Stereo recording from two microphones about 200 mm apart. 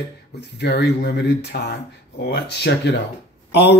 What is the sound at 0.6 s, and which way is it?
Speech, 55° left (ahead or behind).